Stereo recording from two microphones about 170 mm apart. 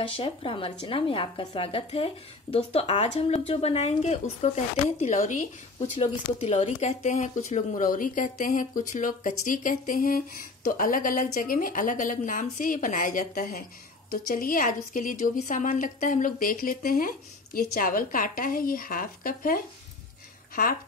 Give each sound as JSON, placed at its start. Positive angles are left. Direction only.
{"t": 0.0, "sound": "a woman's voice", "side_deg": 30}
{"t": 14.1, "sound": "a woman's voice", "side_deg": 60}